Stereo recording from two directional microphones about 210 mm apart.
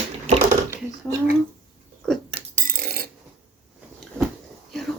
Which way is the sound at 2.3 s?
30° right (ahead or behind).